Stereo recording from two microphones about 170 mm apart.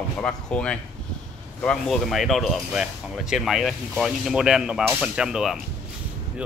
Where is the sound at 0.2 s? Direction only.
5° left (ahead or behind).